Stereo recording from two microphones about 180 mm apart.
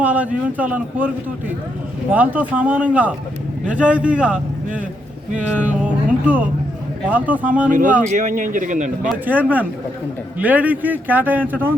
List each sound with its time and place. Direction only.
0.0 s a man's voice: 10° right (ahead or behind)
7.7 s speech: 45° right (ahead or behind)
9.0 s a man's voice: 10° right (ahead or behind)